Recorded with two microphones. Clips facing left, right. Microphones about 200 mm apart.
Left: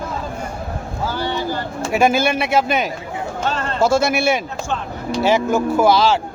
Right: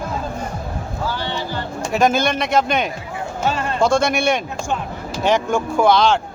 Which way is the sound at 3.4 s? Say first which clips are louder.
Right 2 dB; 10° right (ahead or behind).